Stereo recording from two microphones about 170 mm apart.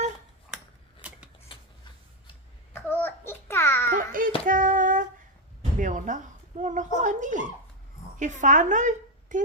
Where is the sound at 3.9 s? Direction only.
55° right (ahead or behind).